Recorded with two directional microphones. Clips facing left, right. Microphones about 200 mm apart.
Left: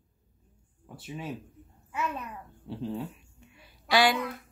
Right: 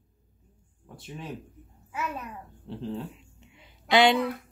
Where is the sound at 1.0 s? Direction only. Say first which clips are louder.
Left 1 dB; 5° left (ahead or behind).